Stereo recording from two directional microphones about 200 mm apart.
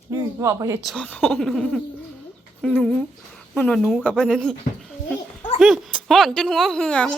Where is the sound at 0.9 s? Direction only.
5° left (ahead or behind).